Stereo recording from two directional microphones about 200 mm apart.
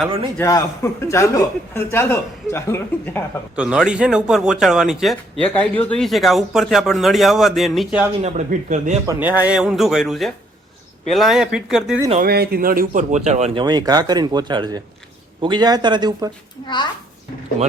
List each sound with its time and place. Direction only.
0.3 s a man's voice: 15° left (ahead or behind)
3.5 s a man's voice: 5° right (ahead or behind)
8.2 s speech: 35° right (ahead or behind)
9.0 s a man's voice: 10° right (ahead or behind)
12.2 s a man's voice: 50° right (ahead or behind); by 16.3 s 20° right (ahead or behind)
16.6 s a child's voice: 20° left (ahead or behind)